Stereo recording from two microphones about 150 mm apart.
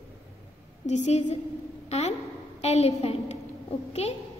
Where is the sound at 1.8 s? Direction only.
45° left (ahead or behind).